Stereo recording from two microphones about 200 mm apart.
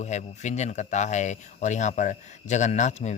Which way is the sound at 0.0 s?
35° left (ahead or behind).